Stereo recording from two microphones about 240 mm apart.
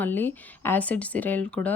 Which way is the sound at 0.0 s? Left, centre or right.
Centre.